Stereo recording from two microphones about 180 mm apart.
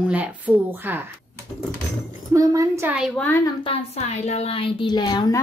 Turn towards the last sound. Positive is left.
turn(degrees=25)  # may be behind; listen again after turning